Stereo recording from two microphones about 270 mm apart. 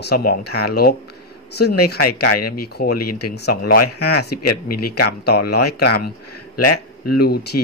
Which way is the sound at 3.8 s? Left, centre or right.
Left.